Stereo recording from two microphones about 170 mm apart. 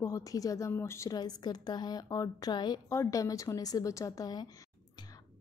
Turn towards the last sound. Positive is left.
turn(degrees=20)  # may be behind; listen again after turning